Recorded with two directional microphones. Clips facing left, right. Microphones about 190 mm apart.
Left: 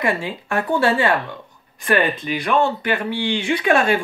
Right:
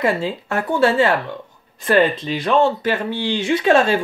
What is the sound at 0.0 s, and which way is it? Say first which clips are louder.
Speech: right 3 dB; 25° right (ahead or behind).